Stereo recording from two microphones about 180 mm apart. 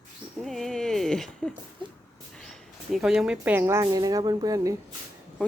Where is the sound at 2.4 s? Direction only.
Centre (ahead or behind); by 4.8 s 20° right (ahead or behind).